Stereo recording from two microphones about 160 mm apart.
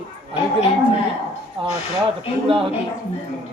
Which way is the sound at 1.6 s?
35° right (ahead or behind).